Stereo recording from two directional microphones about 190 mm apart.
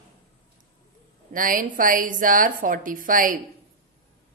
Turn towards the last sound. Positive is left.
turn(degrees=-45)  # may be behind; listen again after turning